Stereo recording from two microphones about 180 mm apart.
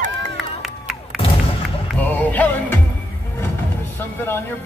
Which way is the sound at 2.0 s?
10° left (ahead or behind).